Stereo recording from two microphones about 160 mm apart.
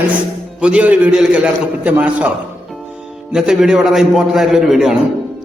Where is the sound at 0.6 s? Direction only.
5° right (ahead or behind).